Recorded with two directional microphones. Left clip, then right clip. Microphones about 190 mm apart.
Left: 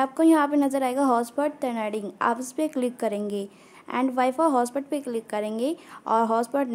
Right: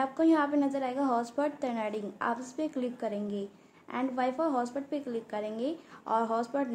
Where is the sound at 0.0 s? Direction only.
25° left (ahead or behind).